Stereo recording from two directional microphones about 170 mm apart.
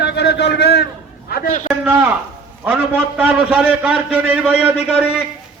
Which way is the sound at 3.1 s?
5° right (ahead or behind).